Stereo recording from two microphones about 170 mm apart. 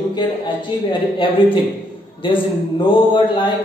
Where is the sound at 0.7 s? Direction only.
25° left (ahead or behind).